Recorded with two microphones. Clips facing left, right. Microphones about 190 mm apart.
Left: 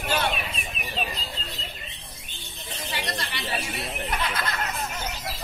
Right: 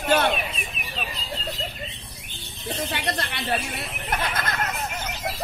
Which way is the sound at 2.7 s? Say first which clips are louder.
Right 5 dB; 60° right (ahead or behind).